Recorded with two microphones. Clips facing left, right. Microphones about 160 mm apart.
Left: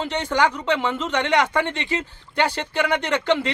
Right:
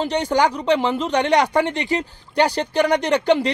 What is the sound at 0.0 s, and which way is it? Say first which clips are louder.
Speech: right 3 dB; 35° right (ahead or behind).